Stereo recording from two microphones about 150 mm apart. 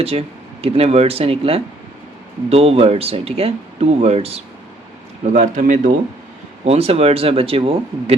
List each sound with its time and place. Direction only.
0.0 s speech: 40° right (ahead or behind)
5.2 s a man's voice: 55° right (ahead or behind)
6.7 s speech: 40° right (ahead or behind)